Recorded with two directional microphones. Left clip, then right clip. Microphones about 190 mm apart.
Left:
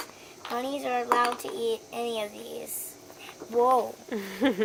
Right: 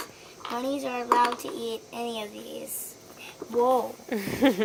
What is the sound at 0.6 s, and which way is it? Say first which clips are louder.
Speech: left 1 dB; 30° left (ahead or behind).